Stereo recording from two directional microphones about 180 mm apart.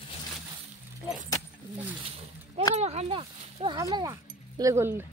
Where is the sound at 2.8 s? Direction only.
35° right (ahead or behind).